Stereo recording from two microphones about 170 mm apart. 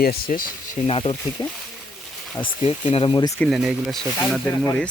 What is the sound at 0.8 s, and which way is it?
Speech, 35° left (ahead or behind).